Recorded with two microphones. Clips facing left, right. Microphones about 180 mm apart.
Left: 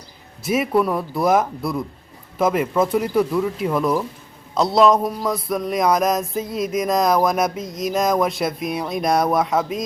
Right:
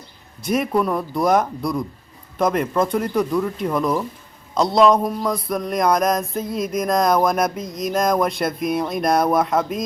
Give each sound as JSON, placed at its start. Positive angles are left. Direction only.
{"t": 0.4, "sound": "music", "side_deg": 5}